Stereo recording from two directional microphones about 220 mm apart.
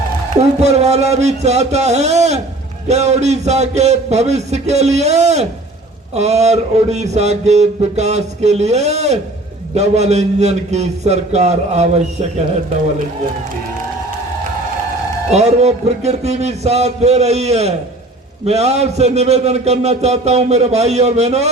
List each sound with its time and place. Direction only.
0.6 s a man's voice: 30° right (ahead or behind)
15.3 s a man's voice: 30° right (ahead or behind)